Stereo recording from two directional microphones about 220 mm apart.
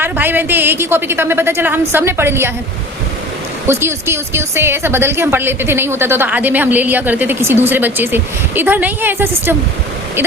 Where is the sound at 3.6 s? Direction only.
10° right (ahead or behind).